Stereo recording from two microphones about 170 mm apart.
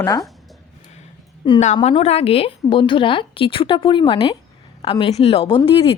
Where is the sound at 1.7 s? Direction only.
35° left (ahead or behind).